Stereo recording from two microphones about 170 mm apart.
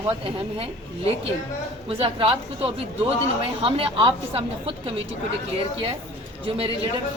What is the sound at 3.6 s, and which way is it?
A woman's voice, 30° right (ahead or behind).